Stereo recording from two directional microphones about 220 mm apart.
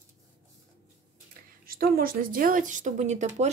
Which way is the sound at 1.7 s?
40° right (ahead or behind).